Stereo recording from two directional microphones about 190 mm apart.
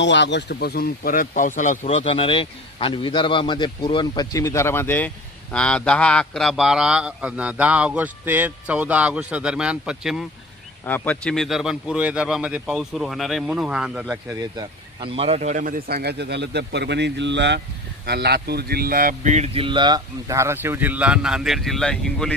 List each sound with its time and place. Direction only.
0.0 s speech: 65° left (ahead or behind); by 10.2 s 5° right (ahead or behind)
10.9 s speech: 5° left (ahead or behind)
14.0 s speech: 20° right (ahead or behind); by 22.3 s 5° left (ahead or behind)